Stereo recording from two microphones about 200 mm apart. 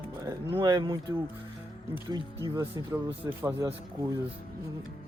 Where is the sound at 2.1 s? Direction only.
20° right (ahead or behind).